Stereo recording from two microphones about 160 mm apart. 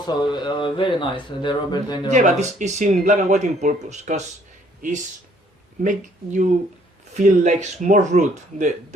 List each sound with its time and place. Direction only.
0.1 s speech: 30° left (ahead or behind)
2.0 s speech: 50° right (ahead or behind)
5.8 s speech: 50° right (ahead or behind)